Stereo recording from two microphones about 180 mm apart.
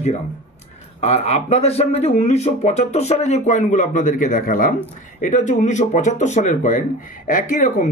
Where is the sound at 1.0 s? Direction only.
40° left (ahead or behind).